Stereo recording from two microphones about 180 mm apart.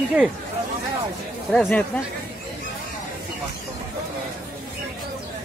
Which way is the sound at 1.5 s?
5° left (ahead or behind).